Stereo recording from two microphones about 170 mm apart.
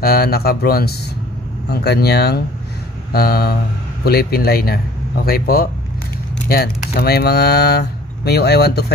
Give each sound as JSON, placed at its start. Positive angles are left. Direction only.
{"t": 0.0, "sound": "speech", "side_deg": 65}